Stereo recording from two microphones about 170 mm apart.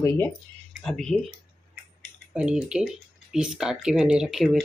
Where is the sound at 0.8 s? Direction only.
5° left (ahead or behind).